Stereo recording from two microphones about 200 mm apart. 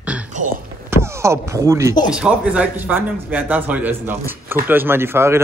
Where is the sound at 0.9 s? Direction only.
15° right (ahead or behind).